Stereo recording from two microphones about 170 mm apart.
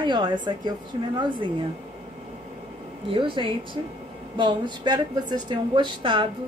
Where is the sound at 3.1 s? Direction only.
30° right (ahead or behind).